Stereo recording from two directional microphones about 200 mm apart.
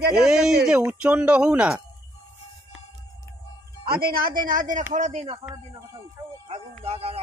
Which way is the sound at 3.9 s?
50° right (ahead or behind).